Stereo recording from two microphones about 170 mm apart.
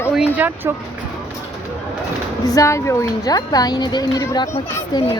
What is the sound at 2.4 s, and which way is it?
Speech, 20° left (ahead or behind).